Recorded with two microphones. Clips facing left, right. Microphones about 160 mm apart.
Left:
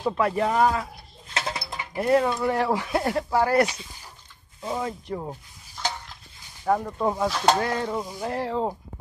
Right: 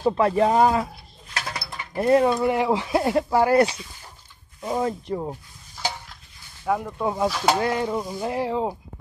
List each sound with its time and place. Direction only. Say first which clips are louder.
0.0 s speech: right 4 dB; 25° right (ahead or behind)
1.3 s a sound: left 2 dB; 25° left (ahead or behind)
2.0 s speech: right 3 dB; 25° right (ahead or behind)
5.3 s stir: right 2 dB; 10° right (ahead or behind)
6.7 s speech: left 1 dB; centre (ahead or behind)
7.5 s a sound: right 2 dB; 15° right (ahead or behind)